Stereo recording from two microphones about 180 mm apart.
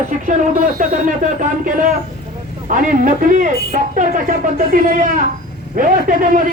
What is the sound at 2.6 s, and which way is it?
Speech, 45° right (ahead or behind).